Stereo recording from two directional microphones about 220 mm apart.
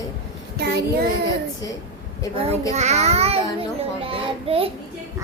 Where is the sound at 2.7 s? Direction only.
30° right (ahead or behind).